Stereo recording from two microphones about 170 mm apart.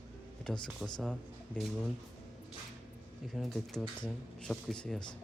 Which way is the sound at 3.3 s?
Centre (ahead or behind).